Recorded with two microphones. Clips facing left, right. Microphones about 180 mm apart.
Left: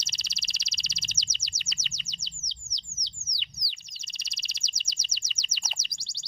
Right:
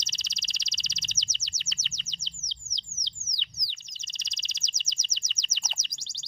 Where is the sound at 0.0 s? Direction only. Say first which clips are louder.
Even; 10° left (ahead or behind).